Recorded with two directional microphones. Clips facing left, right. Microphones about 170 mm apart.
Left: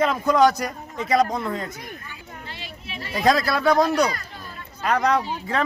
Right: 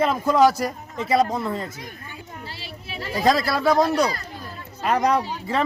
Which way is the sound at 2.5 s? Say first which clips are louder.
Right 1 dB; 35° right (ahead or behind).